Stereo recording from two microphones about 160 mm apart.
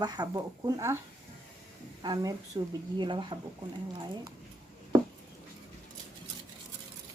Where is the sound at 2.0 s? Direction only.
25° right (ahead or behind).